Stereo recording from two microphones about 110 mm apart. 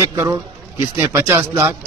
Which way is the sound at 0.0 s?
25° right (ahead or behind).